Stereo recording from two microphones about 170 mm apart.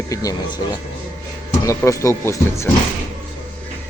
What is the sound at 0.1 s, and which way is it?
Speech, 20° left (ahead or behind).